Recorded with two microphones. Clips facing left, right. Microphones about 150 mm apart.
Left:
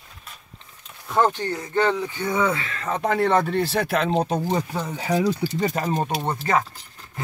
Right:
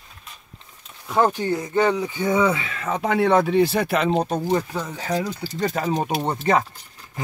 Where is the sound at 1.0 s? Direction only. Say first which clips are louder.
Right 1 dB; 10° right (ahead or behind).